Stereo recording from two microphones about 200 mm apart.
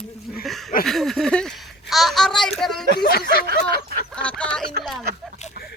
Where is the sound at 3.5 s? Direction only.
50° right (ahead or behind).